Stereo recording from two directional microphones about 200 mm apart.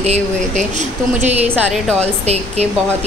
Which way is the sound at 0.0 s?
35° right (ahead or behind).